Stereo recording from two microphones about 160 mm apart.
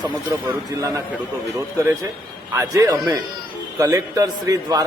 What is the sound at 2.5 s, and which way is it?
A man's voice, 20° right (ahead or behind).